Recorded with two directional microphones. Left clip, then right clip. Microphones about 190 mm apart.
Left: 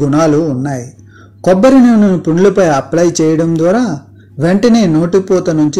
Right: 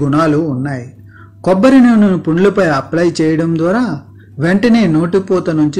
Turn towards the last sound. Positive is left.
turn(degrees=35)  # may be behind; listen again after turning